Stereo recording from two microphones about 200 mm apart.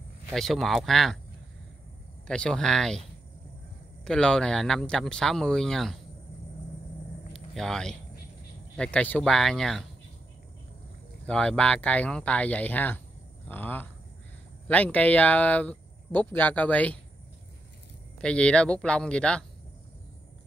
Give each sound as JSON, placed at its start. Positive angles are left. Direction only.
{"t": 0.3, "sound": "speech", "side_deg": 0}
{"t": 2.2, "sound": "speech", "side_deg": 5}
{"t": 4.0, "sound": "speech", "side_deg": 5}
{"t": 7.3, "sound": "speech", "side_deg": 0}
{"t": 11.2, "sound": "speech", "side_deg": 5}
{"t": 18.2, "sound": "speech", "side_deg": 5}